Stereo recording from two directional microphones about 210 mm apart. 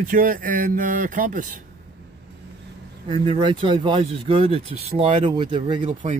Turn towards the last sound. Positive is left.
turn(degrees=-25)  # may be behind; listen again after turning